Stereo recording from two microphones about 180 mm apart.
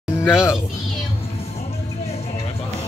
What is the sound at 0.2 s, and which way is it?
Speech, 15° left (ahead or behind).